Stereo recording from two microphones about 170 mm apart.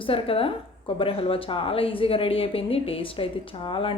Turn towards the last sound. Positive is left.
turn(degrees=30)  # may be behind; listen again after turning